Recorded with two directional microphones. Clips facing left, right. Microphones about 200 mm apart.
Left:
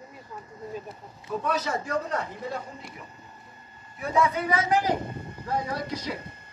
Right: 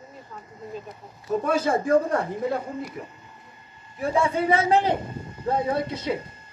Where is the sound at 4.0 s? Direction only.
30° right (ahead or behind).